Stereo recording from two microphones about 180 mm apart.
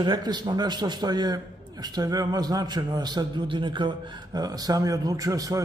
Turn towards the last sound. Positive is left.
turn(degrees=-20)  # may be behind; listen again after turning